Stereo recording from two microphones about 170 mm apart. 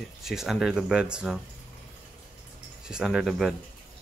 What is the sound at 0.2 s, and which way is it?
Speech, centre (ahead or behind).